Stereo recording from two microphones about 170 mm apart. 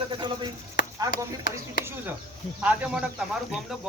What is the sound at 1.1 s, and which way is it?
Speech, 55° left (ahead or behind).